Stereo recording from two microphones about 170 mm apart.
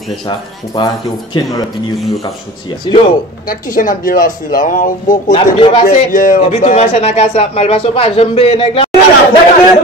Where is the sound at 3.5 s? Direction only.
55° left (ahead or behind).